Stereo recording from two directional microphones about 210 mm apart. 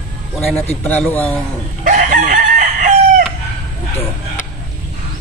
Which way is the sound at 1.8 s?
40° right (ahead or behind).